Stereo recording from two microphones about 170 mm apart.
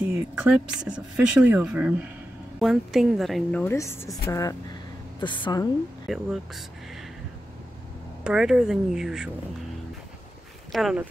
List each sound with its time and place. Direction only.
0.4 s speech: 5° right (ahead or behind)
3.6 s a woman's voice: 15° left (ahead or behind)
6.0 s speech: centre (ahead or behind)
8.2 s speech: 5° right (ahead or behind)
10.7 s speech: centre (ahead or behind)